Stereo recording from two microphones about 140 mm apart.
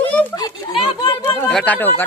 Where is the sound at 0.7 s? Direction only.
35° left (ahead or behind).